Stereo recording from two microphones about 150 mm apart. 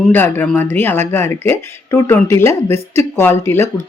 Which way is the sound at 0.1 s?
15° left (ahead or behind).